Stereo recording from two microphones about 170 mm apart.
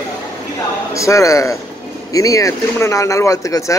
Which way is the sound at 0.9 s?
20° left (ahead or behind).